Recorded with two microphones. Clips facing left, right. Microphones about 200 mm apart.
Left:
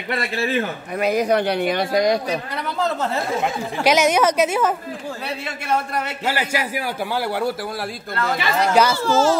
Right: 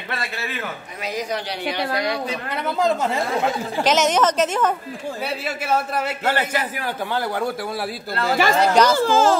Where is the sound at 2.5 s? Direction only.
15° right (ahead or behind).